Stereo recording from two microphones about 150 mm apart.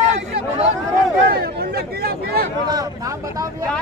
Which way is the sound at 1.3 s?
85° right.